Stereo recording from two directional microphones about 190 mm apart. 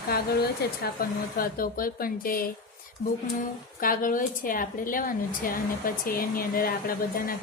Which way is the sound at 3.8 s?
45° left (ahead or behind).